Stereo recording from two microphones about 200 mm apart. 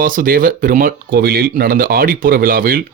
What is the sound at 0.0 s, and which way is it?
Speech, 45° right (ahead or behind).